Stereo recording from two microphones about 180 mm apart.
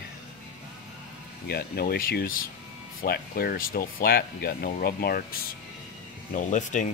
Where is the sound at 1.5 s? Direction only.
60° left (ahead or behind).